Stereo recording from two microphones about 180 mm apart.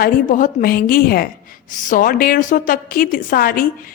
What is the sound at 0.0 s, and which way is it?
A woman's voice, 50° left (ahead or behind).